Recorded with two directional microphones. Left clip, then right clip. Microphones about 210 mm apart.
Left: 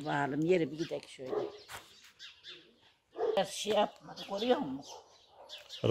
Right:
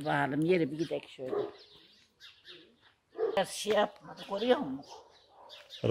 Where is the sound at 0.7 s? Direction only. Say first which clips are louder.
Right 3 dB; 30° right (ahead or behind).